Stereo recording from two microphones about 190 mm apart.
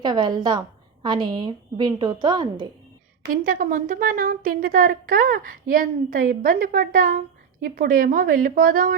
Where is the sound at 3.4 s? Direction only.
45° right (ahead or behind).